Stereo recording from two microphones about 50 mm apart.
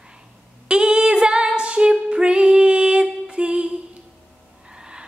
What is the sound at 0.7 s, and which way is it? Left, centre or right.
Female singing, centre.